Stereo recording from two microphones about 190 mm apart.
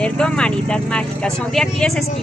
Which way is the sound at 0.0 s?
5° left (ahead or behind).